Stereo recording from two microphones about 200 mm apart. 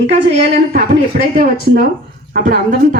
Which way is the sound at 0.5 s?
50° right (ahead or behind).